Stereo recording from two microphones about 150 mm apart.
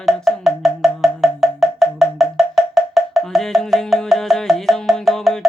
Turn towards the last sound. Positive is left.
turn(degrees=0)  # may be behind; listen again after turning